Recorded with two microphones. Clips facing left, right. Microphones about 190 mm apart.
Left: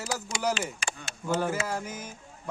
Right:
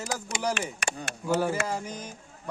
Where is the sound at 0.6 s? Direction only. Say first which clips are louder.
Right 2 dB; 65° right (ahead or behind).